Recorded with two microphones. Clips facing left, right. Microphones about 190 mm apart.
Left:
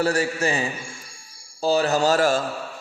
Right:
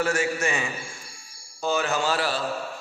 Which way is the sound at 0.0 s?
35° left (ahead or behind).